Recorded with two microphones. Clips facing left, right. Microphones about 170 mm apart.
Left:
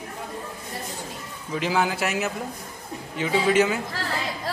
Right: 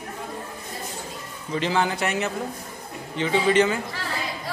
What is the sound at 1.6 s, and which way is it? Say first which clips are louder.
A man's voice: even; 5° left (ahead or behind).